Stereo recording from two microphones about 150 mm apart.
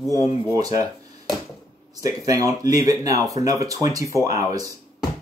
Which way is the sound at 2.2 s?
25° right (ahead or behind).